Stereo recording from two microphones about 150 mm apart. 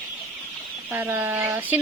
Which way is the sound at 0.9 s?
10° right (ahead or behind).